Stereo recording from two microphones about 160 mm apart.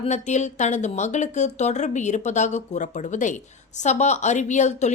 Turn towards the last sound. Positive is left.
turn(degrees=45)  # may be behind; listen again after turning